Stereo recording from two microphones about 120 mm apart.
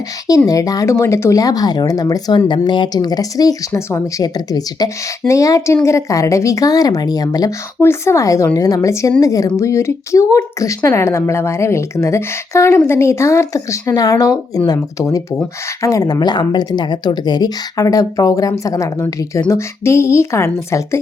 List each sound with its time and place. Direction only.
0.3 s a woman's voice: 30° left (ahead or behind)